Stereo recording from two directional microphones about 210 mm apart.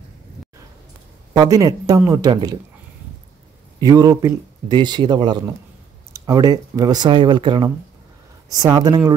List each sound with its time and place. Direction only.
1.3 s speech: 15° right (ahead or behind)
3.8 s speech: 15° right (ahead or behind)